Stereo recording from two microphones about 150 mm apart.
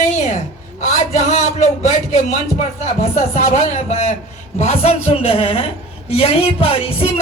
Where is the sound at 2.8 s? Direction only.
45° left (ahead or behind).